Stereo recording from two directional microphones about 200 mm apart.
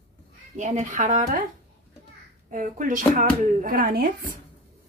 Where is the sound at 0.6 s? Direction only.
35° right (ahead or behind).